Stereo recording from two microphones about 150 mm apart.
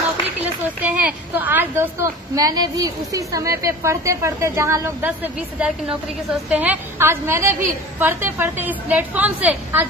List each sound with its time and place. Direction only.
0.8 s a woman's voice: 10° right (ahead or behind)